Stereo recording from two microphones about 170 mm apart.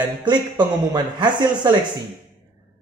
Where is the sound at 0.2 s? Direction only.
25° right (ahead or behind).